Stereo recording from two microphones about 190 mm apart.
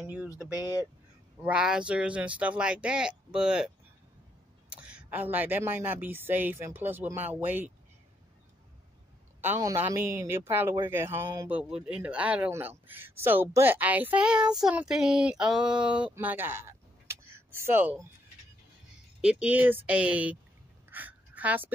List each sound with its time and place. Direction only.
0.3 s speech: 20° left (ahead or behind)
1.4 s a man's voice: 5° right (ahead or behind)
9.4 s a man's voice: 15° right (ahead or behind)
19.2 s a man's voice: 5° right (ahead or behind)
20.9 s a sound: 10° right (ahead or behind)